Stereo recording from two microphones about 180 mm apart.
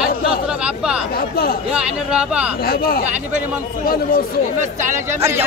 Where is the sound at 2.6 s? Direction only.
55° left (ahead or behind).